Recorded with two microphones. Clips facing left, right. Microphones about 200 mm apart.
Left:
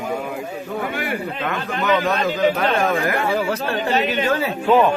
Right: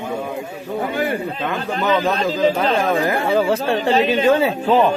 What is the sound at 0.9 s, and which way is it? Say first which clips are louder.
A man's voice: right 3 dB; 30° right (ahead or behind).